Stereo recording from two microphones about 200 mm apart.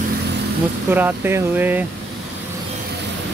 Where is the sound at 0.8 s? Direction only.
10° right (ahead or behind).